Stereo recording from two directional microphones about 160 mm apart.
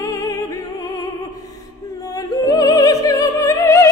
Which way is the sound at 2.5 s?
25° left (ahead or behind).